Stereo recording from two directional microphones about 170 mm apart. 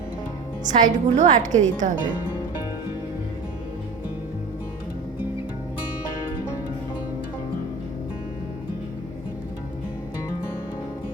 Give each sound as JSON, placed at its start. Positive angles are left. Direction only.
{"t": 0.6, "sound": "a woman's voice", "side_deg": -45}